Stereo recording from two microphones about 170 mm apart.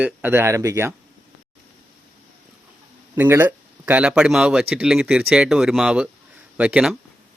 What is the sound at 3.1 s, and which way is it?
Speech, 15° right (ahead or behind).